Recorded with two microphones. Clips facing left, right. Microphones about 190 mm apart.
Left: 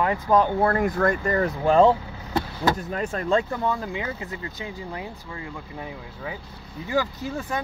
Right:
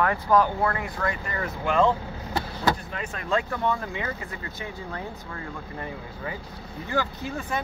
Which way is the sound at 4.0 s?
20° left (ahead or behind).